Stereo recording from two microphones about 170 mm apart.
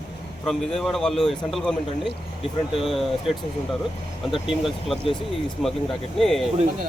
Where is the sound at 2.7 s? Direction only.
Centre (ahead or behind).